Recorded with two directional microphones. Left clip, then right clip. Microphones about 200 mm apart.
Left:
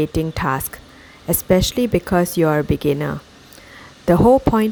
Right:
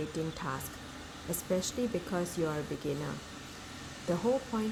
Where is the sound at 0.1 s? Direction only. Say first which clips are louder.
Left 16 dB; 45° left (ahead or behind).